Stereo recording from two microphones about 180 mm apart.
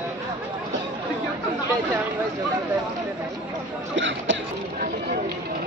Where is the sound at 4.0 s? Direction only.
90° right.